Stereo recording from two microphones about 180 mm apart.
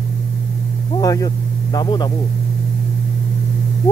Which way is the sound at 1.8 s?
25° left (ahead or behind).